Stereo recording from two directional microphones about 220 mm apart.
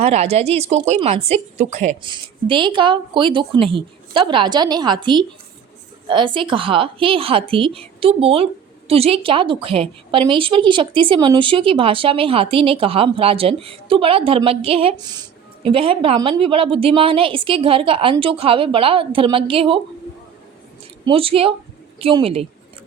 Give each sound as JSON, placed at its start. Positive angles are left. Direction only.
{"t": 0.0, "sound": "a woman's voice", "side_deg": -30}
{"t": 21.0, "sound": "a woman's voice", "side_deg": -25}